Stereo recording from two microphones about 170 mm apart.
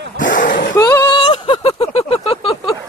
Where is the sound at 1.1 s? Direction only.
30° left (ahead or behind).